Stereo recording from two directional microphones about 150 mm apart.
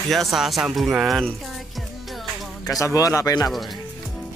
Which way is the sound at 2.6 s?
25° left (ahead or behind).